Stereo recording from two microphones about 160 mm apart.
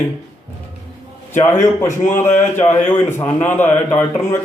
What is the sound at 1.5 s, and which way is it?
Speech, 50° left (ahead or behind).